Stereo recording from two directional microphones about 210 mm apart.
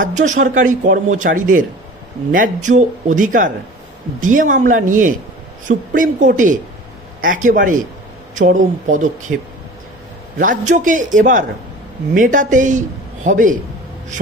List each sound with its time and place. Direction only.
0.0 s a man's voice: 35° right (ahead or behind)
10.4 s a man's voice: 35° right (ahead or behind)